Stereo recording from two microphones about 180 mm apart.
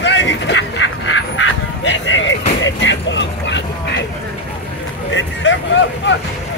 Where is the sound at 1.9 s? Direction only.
90° left.